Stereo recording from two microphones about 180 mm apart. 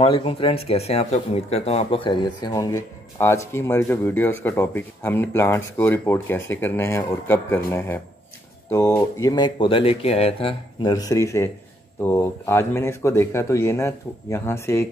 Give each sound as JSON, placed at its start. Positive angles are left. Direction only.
{"t": 0.0, "sound": "speech", "side_deg": 30}